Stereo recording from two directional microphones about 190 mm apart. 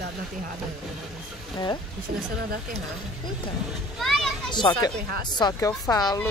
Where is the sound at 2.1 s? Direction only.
35° right (ahead or behind).